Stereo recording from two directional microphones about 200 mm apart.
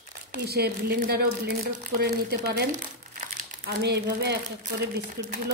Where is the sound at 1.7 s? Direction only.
40° right (ahead or behind).